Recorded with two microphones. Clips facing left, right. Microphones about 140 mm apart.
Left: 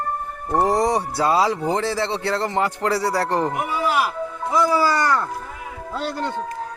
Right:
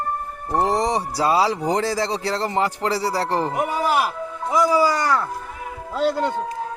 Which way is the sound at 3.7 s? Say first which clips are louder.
Right 1 dB; 40° right (ahead or behind).